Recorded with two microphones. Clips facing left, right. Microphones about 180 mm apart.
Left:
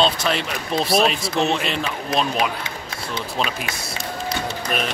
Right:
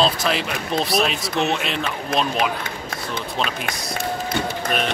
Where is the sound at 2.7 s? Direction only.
50° right (ahead or behind).